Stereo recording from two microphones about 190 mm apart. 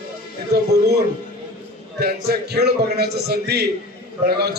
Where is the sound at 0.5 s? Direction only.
60° right (ahead or behind).